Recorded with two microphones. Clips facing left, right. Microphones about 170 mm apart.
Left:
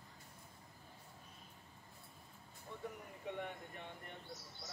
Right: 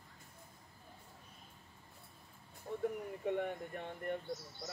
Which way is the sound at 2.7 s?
50° right (ahead or behind).